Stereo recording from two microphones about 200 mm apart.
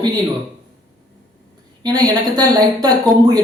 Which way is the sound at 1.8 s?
20° right (ahead or behind).